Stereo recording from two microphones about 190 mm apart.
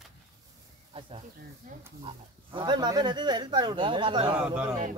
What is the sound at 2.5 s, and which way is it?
Speech, 25° right (ahead or behind).